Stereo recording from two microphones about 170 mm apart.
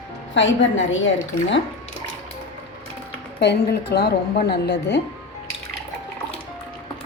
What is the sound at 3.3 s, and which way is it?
A woman's voice, 80° left.